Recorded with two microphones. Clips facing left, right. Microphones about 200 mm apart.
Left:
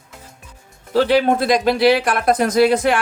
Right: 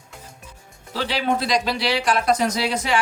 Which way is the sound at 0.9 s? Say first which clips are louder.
Left 8 dB; 50° left (ahead or behind).